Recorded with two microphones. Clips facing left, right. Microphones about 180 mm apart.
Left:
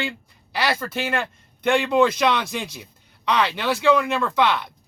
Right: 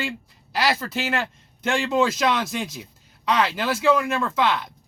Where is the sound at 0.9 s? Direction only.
55° left (ahead or behind).